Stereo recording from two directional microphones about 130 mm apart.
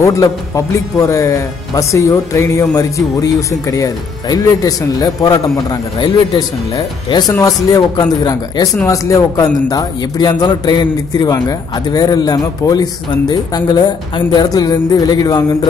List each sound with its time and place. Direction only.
0.0 s a man's voice: 25° left (ahead or behind)